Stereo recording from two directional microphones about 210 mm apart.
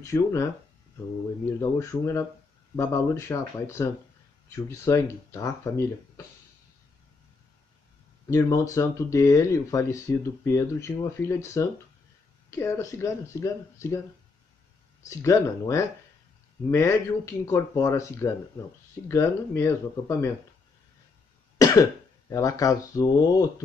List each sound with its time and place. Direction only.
0.0 s speech: 15° left (ahead or behind)
1.6 s speech: 15° left (ahead or behind)
8.3 s speech: 15° left (ahead or behind)
15.0 s speech: 15° left (ahead or behind)
22.3 s speech: 15° left (ahead or behind)